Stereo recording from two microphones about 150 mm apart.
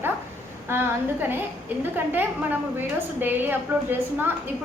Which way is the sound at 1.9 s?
15° right (ahead or behind).